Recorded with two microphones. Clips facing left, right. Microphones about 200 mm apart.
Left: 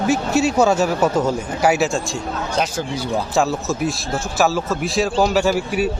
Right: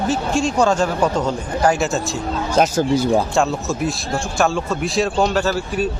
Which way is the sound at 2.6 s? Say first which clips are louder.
Right 8 dB; 45° right (ahead or behind).